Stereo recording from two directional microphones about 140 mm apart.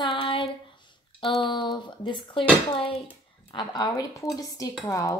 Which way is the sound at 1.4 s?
35° left (ahead or behind).